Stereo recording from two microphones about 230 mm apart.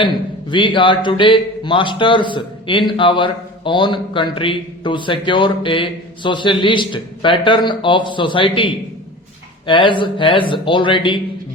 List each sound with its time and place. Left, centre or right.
0.5 s speech: left